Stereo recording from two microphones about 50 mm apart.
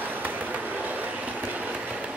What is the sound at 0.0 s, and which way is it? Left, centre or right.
Train, right.